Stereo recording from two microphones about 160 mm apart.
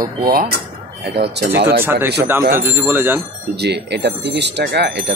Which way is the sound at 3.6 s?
90° right.